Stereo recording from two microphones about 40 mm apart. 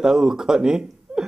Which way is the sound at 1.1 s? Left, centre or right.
Centre.